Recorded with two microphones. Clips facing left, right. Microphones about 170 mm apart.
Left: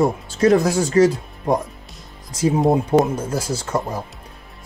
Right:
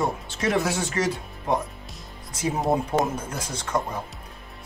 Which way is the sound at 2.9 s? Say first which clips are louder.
Left 9 dB; 15° left (ahead or behind).